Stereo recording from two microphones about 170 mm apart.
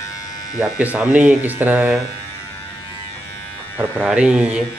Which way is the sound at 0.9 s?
10° right (ahead or behind).